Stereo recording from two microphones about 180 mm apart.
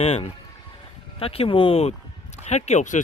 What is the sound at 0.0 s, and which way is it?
Speech, 40° left (ahead or behind).